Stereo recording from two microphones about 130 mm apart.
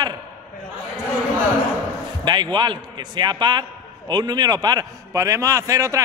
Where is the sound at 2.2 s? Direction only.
35° right (ahead or behind).